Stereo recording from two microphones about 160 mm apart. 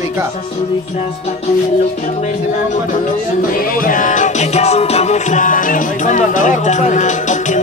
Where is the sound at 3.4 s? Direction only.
60° left (ahead or behind).